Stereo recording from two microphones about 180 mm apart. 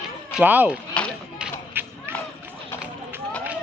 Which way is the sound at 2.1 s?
10° right (ahead or behind).